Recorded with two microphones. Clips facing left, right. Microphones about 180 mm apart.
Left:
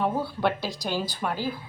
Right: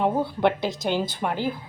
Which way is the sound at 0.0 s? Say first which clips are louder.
Right 4 dB; 20° right (ahead or behind).